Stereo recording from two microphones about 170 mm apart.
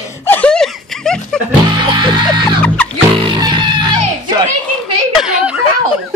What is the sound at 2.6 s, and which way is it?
Music, 5° left (ahead or behind).